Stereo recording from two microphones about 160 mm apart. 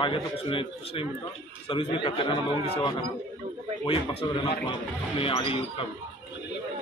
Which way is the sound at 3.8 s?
30° left (ahead or behind).